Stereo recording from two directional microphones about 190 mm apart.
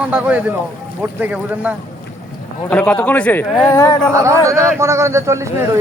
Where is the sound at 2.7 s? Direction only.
5° left (ahead or behind).